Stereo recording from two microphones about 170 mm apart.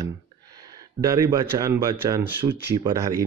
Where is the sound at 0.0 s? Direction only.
20° right (ahead or behind).